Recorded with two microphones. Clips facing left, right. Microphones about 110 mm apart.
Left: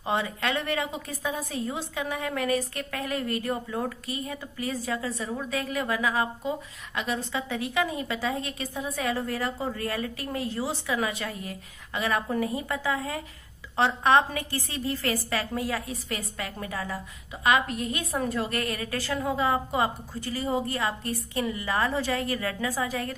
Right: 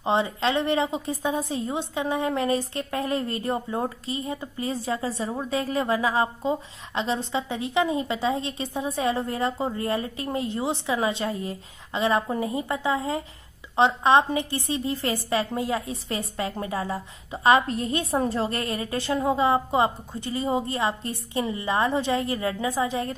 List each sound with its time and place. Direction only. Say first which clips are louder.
0.0 s a woman's voice: right 5 dB; 25° right (ahead or behind)